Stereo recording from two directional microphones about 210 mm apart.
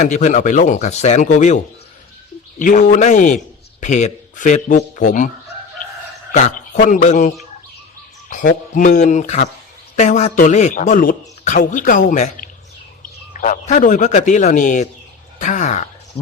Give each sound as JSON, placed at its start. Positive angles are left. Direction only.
{"t": 0.0, "sound": "a man's voice", "side_deg": 35}
{"t": 6.3, "sound": "a man's voice", "side_deg": 35}